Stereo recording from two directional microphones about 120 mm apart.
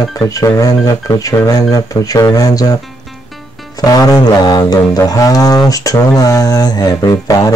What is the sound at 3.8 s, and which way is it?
Music, 30° left (ahead or behind).